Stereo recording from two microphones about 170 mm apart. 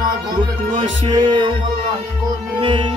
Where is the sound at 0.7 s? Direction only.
30° right (ahead or behind).